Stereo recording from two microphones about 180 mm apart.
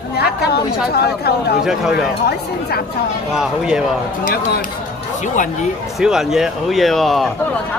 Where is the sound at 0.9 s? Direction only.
60° left (ahead or behind).